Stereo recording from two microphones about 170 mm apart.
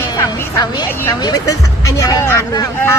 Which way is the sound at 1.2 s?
20° left (ahead or behind).